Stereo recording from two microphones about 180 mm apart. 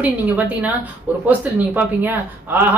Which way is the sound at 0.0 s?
10° right (ahead or behind).